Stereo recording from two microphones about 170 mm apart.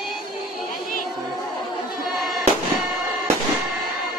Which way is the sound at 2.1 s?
Centre (ahead or behind).